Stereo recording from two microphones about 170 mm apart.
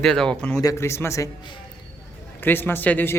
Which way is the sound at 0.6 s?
20° left (ahead or behind).